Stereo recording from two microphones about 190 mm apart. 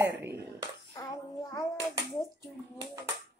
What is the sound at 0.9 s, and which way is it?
Child singing, 20° left (ahead or behind).